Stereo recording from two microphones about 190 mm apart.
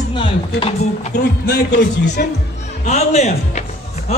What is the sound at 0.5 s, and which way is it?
Speech, 30° left (ahead or behind).